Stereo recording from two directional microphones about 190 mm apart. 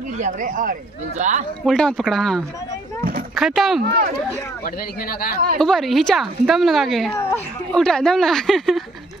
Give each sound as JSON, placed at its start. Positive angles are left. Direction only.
{"t": 0.2, "sound": "speech", "side_deg": -45}
{"t": 1.7, "sound": "a woman's voice", "side_deg": 0}
{"t": 5.6, "sound": "a woman's voice", "side_deg": 0}
{"t": 7.2, "sound": "speech", "side_deg": 15}
{"t": 7.7, "sound": "a woman's voice", "side_deg": 5}